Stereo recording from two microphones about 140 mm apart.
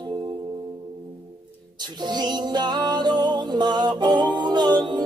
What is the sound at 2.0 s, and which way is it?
Music, 30° right (ahead or behind).